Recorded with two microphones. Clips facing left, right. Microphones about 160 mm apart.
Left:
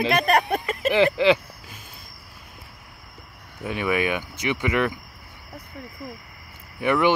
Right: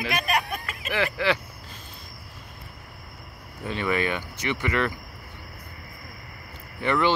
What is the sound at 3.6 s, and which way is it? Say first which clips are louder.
Speech: left 2 dB; 10° left (ahead or behind).